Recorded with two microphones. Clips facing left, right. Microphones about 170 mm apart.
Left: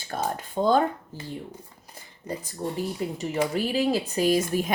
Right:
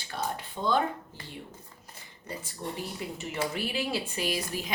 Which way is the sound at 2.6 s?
40° left (ahead or behind).